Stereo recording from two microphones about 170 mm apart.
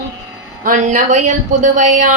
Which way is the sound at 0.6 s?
50° right (ahead or behind).